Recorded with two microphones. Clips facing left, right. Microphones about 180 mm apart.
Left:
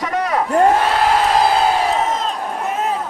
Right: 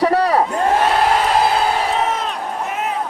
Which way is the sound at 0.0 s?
35° right (ahead or behind).